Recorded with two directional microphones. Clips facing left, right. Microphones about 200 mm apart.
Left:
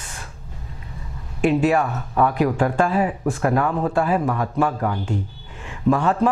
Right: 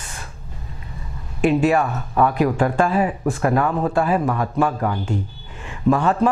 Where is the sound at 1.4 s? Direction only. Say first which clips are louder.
Right 1 dB; 15° right (ahead or behind).